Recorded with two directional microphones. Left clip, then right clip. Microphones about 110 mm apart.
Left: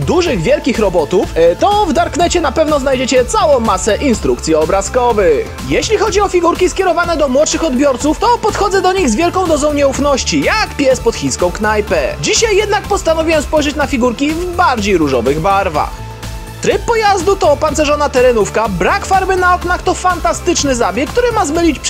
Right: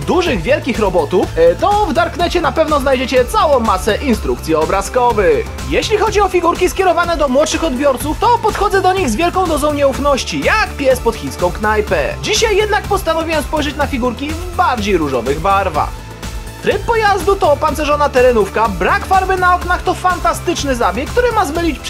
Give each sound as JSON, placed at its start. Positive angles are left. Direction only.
{"t": 0.1, "sound": "speech", "side_deg": 60}
{"t": 6.0, "sound": "speech", "side_deg": 45}